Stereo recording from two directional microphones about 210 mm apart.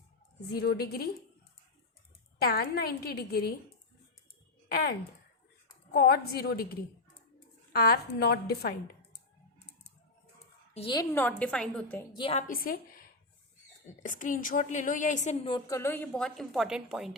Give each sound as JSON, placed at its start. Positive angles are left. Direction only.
{"t": 0.6, "sound": "a woman's voice", "side_deg": 50}
{"t": 2.4, "sound": "a woman's voice", "side_deg": 45}
{"t": 4.7, "sound": "a woman's voice", "side_deg": 45}
{"t": 7.7, "sound": "a woman's voice", "side_deg": 45}
{"t": 9.6, "sound": "typing", "side_deg": 50}
{"t": 10.8, "sound": "a woman's voice", "side_deg": 25}
{"t": 11.1, "sound": "a woman's voice", "side_deg": 10}
{"t": 12.1, "sound": "a woman's voice", "side_deg": 25}
{"t": 12.4, "sound": "a woman's voice", "side_deg": 40}